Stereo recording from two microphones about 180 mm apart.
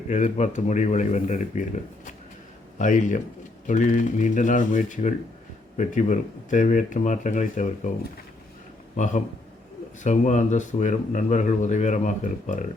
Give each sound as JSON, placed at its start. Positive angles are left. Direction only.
{"t": 0.1, "sound": "a man's voice", "side_deg": 40}
{"t": 10.0, "sound": "a man's voice", "side_deg": 40}